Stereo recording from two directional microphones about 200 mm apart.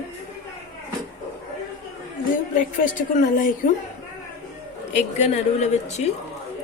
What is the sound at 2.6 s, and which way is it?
Speech, 40° left (ahead or behind).